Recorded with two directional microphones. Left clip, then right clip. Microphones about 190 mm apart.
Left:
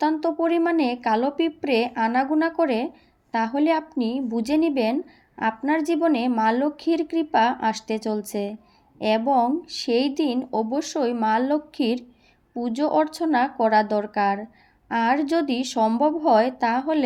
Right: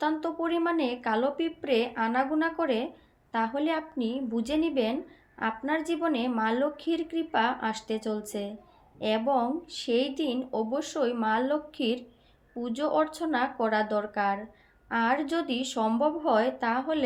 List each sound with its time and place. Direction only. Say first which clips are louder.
0.0 s a woman's voice: left 7 dB; 35° left (ahead or behind)